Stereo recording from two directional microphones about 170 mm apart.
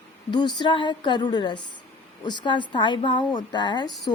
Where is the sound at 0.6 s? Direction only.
25° left (ahead or behind).